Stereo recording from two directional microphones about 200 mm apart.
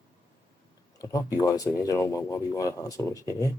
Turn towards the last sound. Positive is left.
turn(degrees=15)  # may be behind; listen again after turning